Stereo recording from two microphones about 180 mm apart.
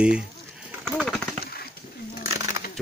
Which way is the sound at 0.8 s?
Centre (ahead or behind).